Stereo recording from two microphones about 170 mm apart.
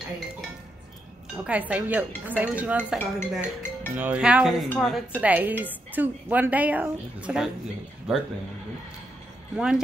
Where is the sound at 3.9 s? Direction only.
10° right (ahead or behind).